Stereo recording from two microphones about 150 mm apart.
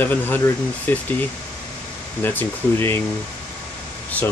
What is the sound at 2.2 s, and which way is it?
Speech, 15° left (ahead or behind).